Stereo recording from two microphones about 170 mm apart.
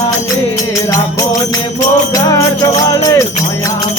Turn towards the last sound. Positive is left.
turn(degrees=20)  # may be behind; listen again after turning